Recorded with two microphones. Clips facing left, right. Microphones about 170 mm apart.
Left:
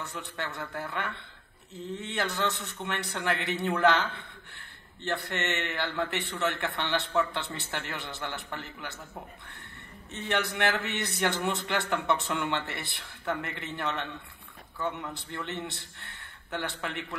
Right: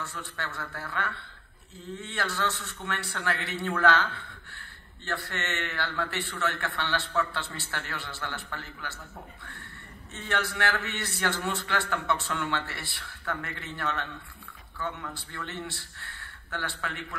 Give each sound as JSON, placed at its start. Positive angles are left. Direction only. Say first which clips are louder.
{"t": 0.0, "sound": "a man's voice", "louder": "left 1 dB", "side_deg": 20}
{"t": 10.1, "sound": "a man's voice", "louder": "left 1 dB", "side_deg": 20}